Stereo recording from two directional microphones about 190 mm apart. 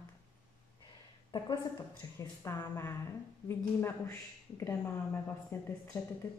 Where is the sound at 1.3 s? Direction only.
20° left (ahead or behind).